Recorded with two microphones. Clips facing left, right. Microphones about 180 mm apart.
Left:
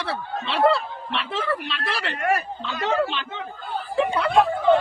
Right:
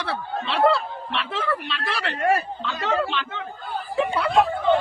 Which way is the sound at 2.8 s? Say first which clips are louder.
Left 1 dB; 20° left (ahead or behind).